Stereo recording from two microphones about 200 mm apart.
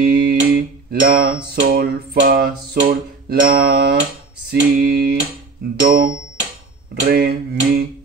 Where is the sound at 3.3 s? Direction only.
45° right (ahead or behind).